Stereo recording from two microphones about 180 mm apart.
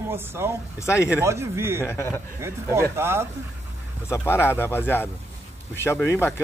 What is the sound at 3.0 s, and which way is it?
Speech, 15° right (ahead or behind).